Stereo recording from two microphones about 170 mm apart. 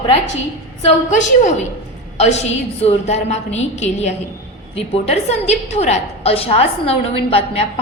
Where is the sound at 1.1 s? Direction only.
45° left (ahead or behind).